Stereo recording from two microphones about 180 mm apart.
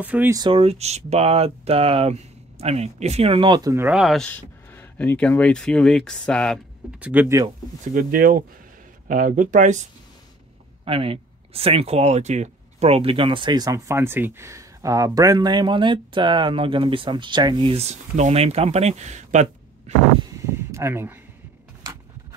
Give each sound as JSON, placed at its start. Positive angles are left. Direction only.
{"t": 0.0, "sound": "speech", "side_deg": -10}
{"t": 0.4, "sound": "speech", "side_deg": -30}
{"t": 3.9, "sound": "speech", "side_deg": 0}
{"t": 7.0, "sound": "speech", "side_deg": -10}
{"t": 7.9, "sound": "speech", "side_deg": -50}
{"t": 10.9, "sound": "speech", "side_deg": -30}
{"t": 19.9, "sound": "vehicle", "side_deg": -40}
{"t": 20.2, "sound": "a sound", "side_deg": -15}